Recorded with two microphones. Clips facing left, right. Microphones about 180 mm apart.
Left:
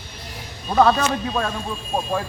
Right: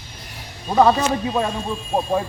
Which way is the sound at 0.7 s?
15° right (ahead or behind).